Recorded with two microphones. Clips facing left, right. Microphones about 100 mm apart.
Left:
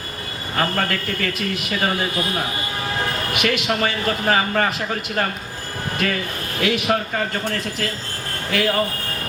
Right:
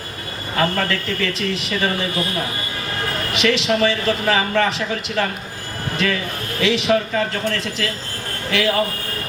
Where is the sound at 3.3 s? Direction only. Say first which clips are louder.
Right 4 dB; 50° left (ahead or behind).